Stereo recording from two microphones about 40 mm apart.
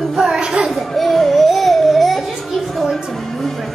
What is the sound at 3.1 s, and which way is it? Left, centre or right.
Music, centre.